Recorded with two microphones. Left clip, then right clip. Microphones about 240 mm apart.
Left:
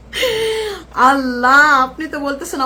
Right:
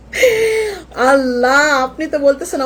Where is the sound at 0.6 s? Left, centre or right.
Left.